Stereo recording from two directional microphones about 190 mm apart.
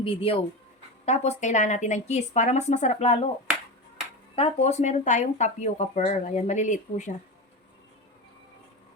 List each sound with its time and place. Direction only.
0.0 s speech: 30° left (ahead or behind)
4.4 s speech: 35° left (ahead or behind)